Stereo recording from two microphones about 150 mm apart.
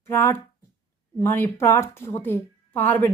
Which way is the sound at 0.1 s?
15° left (ahead or behind).